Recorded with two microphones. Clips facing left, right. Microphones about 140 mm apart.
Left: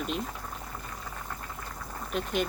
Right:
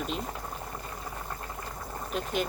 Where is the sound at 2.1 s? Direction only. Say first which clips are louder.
Left 1 dB; centre (ahead or behind).